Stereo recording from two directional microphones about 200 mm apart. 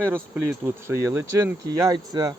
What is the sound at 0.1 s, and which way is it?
Speech, 10° right (ahead or behind).